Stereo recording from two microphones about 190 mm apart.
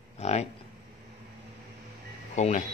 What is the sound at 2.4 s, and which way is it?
Speech, 40° left (ahead or behind).